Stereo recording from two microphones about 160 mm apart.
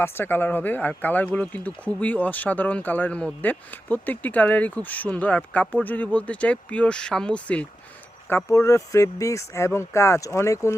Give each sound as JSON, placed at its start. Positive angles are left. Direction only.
{"t": 0.0, "sound": "speech", "side_deg": 15}